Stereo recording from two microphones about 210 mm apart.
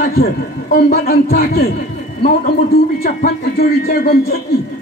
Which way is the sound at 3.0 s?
45° left (ahead or behind).